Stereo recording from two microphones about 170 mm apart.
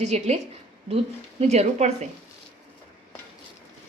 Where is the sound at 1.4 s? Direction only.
40° right (ahead or behind).